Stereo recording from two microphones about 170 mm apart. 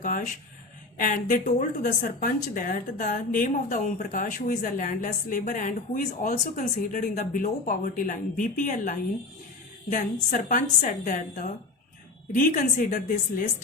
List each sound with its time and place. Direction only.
0.0 s a woman's voice: 50° left (ahead or behind)